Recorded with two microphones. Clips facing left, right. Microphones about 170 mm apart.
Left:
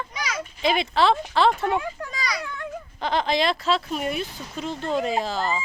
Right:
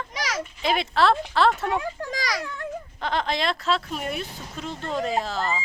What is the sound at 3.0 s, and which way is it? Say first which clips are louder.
A woman's voice: left 3 dB; centre (ahead or behind).